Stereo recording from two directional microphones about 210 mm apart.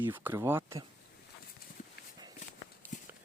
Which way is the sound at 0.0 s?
10° right (ahead or behind).